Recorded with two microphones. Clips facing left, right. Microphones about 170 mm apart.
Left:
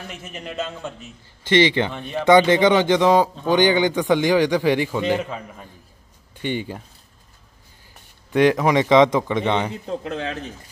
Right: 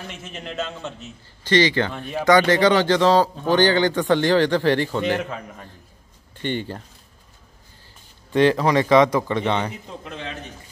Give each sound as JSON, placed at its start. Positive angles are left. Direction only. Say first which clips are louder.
{"t": 0.2, "sound": "a man's voice", "louder": "left 1 dB", "side_deg": 5}
{"t": 1.4, "sound": "a man's voice", "louder": "left 1 dB", "side_deg": 20}
{"t": 1.9, "sound": "a man's voice", "louder": "left 1 dB", "side_deg": 0}
{"t": 2.2, "sound": "speech", "louder": "left 2 dB", "side_deg": 20}
{"t": 6.4, "sound": "speech", "louder": "even", "side_deg": 10}
{"t": 8.3, "sound": "speech", "louder": "left 1 dB", "side_deg": 10}